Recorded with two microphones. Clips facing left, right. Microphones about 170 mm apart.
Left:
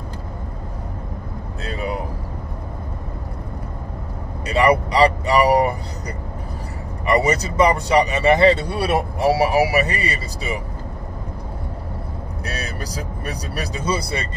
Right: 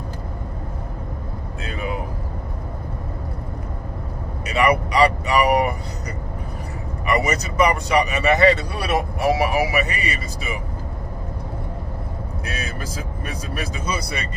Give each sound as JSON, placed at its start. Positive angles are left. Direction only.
{"t": 1.6, "sound": "vehicle", "side_deg": 35}
{"t": 4.5, "sound": "vehicle", "side_deg": 30}
{"t": 7.1, "sound": "speech", "side_deg": 30}
{"t": 12.4, "sound": "speech", "side_deg": 35}